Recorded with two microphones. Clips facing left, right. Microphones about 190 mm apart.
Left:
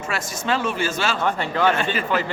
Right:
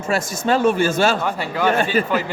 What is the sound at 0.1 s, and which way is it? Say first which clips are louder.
Speech: right 6 dB; 45° right (ahead or behind).